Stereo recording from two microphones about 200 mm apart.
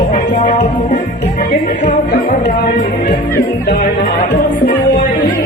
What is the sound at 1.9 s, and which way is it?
Music, 40° left (ahead or behind).